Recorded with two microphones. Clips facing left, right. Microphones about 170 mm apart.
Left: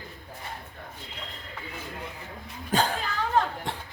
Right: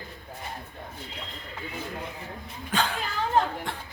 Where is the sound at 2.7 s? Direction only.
45° left (ahead or behind).